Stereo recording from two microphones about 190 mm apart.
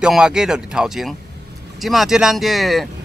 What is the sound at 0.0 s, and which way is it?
Speech, 5° right (ahead or behind).